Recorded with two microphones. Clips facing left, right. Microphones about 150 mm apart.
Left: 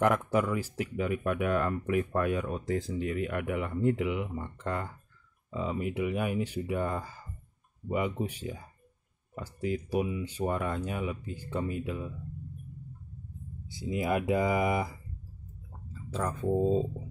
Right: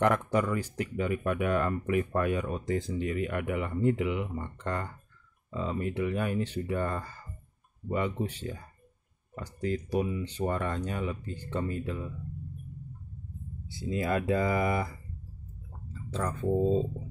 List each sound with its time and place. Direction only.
0.0 s speech: 5° left (ahead or behind)
13.7 s speech: 15° left (ahead or behind)